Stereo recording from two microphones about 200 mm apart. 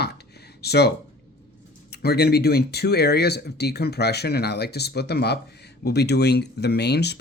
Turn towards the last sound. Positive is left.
turn(degrees=55)  # may be behind; listen again after turning